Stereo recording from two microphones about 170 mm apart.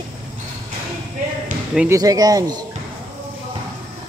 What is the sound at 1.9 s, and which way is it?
Speech, 20° right (ahead or behind).